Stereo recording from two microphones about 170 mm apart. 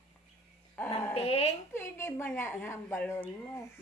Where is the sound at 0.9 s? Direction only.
35° left (ahead or behind).